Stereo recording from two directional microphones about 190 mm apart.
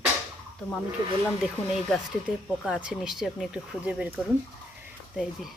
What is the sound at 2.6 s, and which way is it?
Speech, 5° right (ahead or behind).